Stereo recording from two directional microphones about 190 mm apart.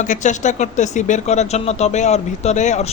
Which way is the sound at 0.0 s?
40° left (ahead or behind).